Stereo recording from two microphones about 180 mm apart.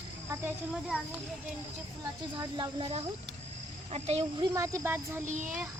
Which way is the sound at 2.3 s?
25° right (ahead or behind).